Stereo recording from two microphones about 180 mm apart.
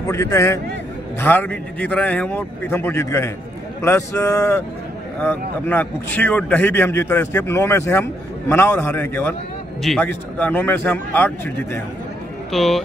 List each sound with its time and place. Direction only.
0.1 s a man's voice: 15° left (ahead or behind)